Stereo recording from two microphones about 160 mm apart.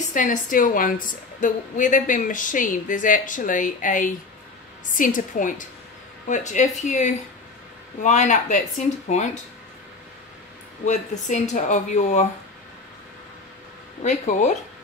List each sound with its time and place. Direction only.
0.1 s a woman's voice: 55° left (ahead or behind)
10.9 s speech: 50° left (ahead or behind)
14.0 s speech: 45° left (ahead or behind)